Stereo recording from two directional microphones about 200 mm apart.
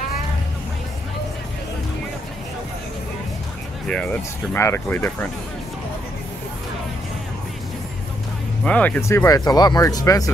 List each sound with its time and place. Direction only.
4.6 s speech: 10° left (ahead or behind)
8.6 s speech: 5° left (ahead or behind)